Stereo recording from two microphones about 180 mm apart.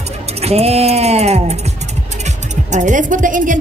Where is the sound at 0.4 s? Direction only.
35° right (ahead or behind).